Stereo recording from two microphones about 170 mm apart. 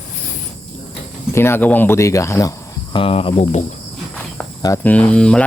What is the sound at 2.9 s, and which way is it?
Cricket, 35° left (ahead or behind).